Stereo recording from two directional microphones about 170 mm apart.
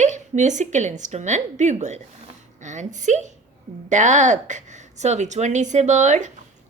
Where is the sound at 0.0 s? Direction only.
45° right (ahead or behind).